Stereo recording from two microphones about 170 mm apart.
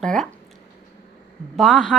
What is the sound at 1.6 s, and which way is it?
Speech, 5° left (ahead or behind).